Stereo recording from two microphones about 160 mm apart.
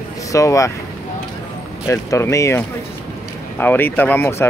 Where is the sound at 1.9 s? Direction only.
15° left (ahead or behind).